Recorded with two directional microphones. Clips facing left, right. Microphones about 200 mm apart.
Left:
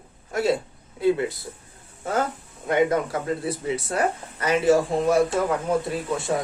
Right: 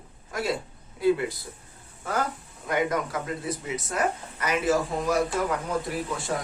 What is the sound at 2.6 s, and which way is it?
Speech, 25° left (ahead or behind).